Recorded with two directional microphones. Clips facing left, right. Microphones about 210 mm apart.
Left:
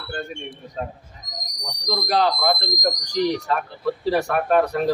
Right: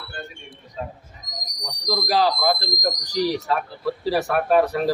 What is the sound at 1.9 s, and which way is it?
Speech, 5° right (ahead or behind).